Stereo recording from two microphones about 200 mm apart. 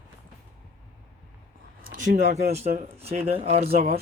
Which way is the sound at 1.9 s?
40° right (ahead or behind).